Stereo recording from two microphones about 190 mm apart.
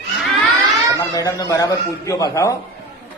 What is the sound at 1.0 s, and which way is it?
Speech, 15° left (ahead or behind).